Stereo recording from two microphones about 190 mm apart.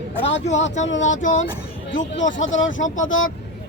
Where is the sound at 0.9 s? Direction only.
85° left.